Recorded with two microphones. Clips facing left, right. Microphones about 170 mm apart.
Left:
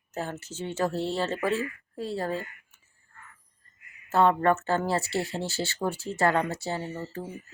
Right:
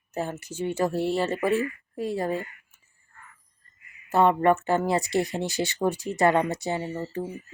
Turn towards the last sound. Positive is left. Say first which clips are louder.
# right 4 dB
turn(degrees=-15)  # may be behind; listen again after turning